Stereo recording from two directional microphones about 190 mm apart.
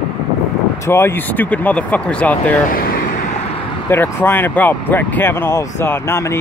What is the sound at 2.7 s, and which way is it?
Vehicle, 50° left (ahead or behind).